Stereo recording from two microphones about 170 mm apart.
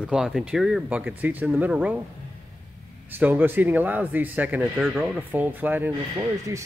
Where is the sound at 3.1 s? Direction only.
10° right (ahead or behind).